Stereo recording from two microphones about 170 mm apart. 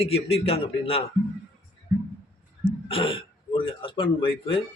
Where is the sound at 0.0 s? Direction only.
35° left (ahead or behind).